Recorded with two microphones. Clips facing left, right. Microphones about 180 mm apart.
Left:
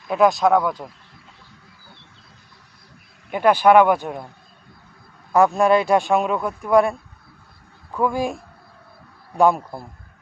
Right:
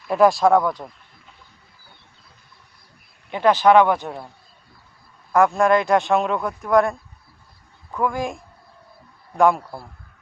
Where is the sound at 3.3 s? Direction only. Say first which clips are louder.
Left 1 dB; 10° left (ahead or behind).